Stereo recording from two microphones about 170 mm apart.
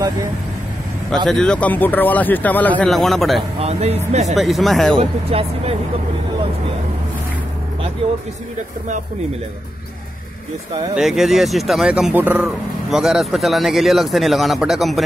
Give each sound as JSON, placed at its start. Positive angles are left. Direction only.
{"t": 1.1, "sound": "a man's voice", "side_deg": 0}
{"t": 3.5, "sound": "speech", "side_deg": -35}
{"t": 4.4, "sound": "speech", "side_deg": 0}
{"t": 4.9, "sound": "speech", "side_deg": -35}
{"t": 11.0, "sound": "speech", "side_deg": 0}